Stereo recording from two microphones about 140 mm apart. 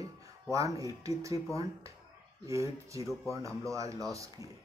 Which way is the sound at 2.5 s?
20° right (ahead or behind).